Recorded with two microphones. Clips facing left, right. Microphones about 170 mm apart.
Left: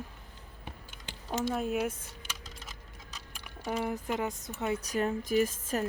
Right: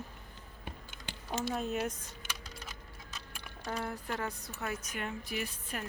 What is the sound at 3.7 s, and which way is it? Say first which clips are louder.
Speech: left 5 dB; 15° left (ahead or behind).